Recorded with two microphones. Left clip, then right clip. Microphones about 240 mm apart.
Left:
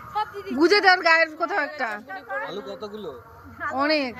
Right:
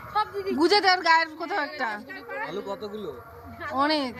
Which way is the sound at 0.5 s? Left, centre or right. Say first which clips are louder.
Left 4 dB; centre.